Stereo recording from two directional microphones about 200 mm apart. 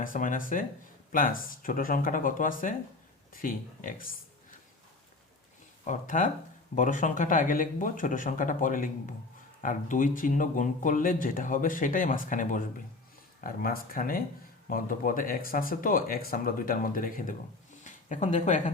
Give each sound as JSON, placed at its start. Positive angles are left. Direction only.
{"t": 0.0, "sound": "speech", "side_deg": 40}
{"t": 5.8, "sound": "speech", "side_deg": 40}